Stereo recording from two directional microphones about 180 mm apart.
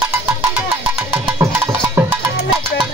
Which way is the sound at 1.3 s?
15° right (ahead or behind).